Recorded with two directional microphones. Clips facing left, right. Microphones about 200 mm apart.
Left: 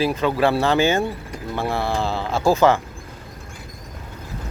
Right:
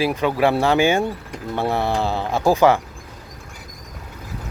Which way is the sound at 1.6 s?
20° right (ahead or behind).